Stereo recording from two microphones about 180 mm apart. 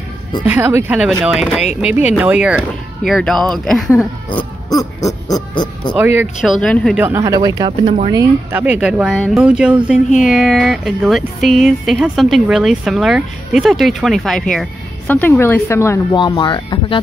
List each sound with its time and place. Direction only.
0.5 s speech: 15° right (ahead or behind)
4.3 s speech: 25° left (ahead or behind)
5.9 s speech: 10° right (ahead or behind)
6.6 s speech: 5° left (ahead or behind)
7.0 s speech: 15° right (ahead or behind); by 16.2 s 15° left (ahead or behind)
16.2 s speech: 25° left (ahead or behind)